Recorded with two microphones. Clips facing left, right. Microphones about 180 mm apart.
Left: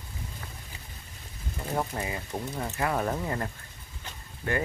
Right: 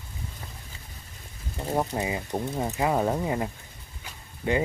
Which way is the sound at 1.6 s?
30° right (ahead or behind).